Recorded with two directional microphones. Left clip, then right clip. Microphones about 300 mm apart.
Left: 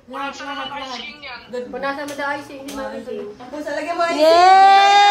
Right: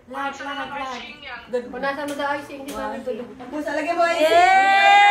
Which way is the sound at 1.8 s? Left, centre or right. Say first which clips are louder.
Left 4 dB; left.